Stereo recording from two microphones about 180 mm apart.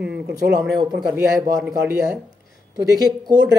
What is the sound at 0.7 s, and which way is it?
Speech, 20° right (ahead or behind).